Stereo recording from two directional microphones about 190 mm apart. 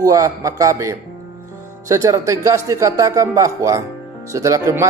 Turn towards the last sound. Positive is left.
turn(degrees=-15)  # may be behind; listen again after turning